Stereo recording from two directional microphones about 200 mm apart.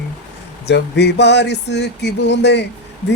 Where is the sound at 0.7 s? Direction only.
60° left (ahead or behind).